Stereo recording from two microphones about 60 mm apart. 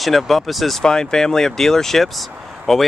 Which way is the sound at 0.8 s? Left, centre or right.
Centre.